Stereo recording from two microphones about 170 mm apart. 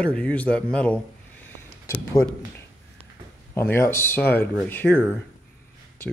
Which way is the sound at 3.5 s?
15° left (ahead or behind).